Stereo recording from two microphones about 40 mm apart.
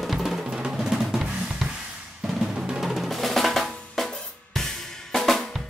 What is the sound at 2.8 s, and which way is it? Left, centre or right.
Drum, centre.